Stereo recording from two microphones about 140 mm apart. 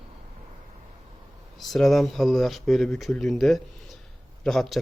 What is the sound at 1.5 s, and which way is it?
Speech, centre (ahead or behind).